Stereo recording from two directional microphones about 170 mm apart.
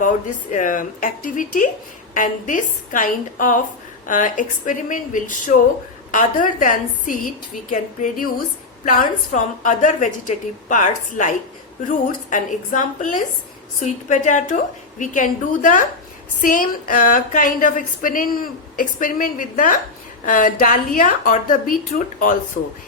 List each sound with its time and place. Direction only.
0.5 s a woman's voice: 50° left (ahead or behind)